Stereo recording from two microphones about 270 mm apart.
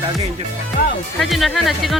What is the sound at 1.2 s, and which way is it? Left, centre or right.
Speech, centre.